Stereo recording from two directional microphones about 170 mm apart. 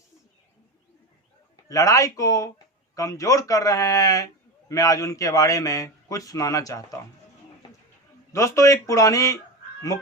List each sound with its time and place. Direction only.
1.6 s a man's voice: 20° left (ahead or behind)
8.3 s a man's voice: 15° left (ahead or behind)